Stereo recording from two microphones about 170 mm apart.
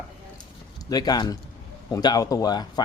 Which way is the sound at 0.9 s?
25° left (ahead or behind).